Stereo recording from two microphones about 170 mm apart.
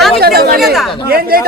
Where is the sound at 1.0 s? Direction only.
60° right (ahead or behind).